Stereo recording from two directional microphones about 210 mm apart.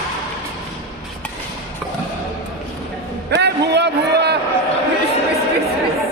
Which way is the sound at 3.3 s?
55° right (ahead or behind).